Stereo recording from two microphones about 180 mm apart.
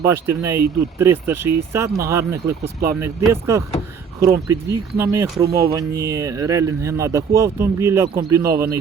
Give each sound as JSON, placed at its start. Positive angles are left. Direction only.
{"t": 0.0, "sound": "speech", "side_deg": -15}